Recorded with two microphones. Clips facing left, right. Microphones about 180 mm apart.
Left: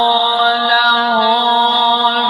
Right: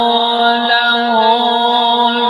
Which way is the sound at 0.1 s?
50° right (ahead or behind).